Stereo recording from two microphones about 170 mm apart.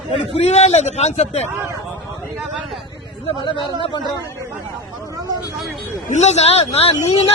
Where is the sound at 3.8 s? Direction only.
25° left (ahead or behind).